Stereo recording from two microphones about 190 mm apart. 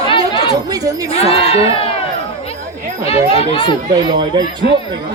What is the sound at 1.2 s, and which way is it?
Crowd, 30° left (ahead or behind).